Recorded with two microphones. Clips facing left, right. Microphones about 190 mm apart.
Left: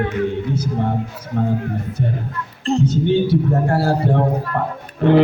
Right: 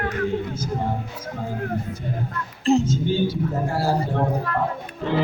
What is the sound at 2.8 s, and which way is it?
Speech, 65° left (ahead or behind).